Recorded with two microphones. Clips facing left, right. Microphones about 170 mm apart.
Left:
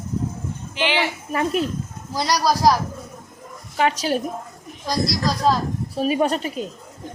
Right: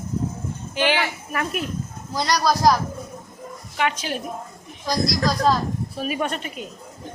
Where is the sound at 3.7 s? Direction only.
35° left (ahead or behind).